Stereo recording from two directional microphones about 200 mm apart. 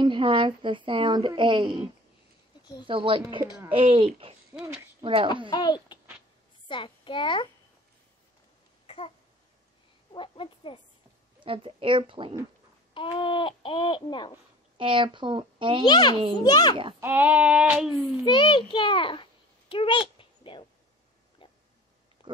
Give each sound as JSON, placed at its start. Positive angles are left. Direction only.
{"t": 0.0, "sound": "speech", "side_deg": -25}
{"t": 2.6, "sound": "speech", "side_deg": 20}
{"t": 2.9, "sound": "speech", "side_deg": -25}
{"t": 5.5, "sound": "babbling", "side_deg": 20}
{"t": 6.7, "sound": "a child's voice", "side_deg": 25}
{"t": 8.8, "sound": "babbling", "side_deg": 30}
{"t": 10.1, "sound": "a sound", "side_deg": 25}
{"t": 11.3, "sound": "speech", "side_deg": -25}
{"t": 12.9, "sound": "babbling", "side_deg": 25}
{"t": 14.8, "sound": "speech", "side_deg": -25}
{"t": 15.8, "sound": "babbling", "side_deg": 20}
{"t": 17.0, "sound": "a sound", "side_deg": -10}
{"t": 18.2, "sound": "babbling", "side_deg": 25}
{"t": 19.7, "sound": "a sound", "side_deg": 25}